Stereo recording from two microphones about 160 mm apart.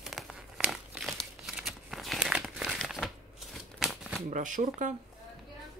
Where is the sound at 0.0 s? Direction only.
Centre (ahead or behind).